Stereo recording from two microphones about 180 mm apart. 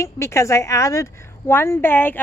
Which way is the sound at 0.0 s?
15° left (ahead or behind).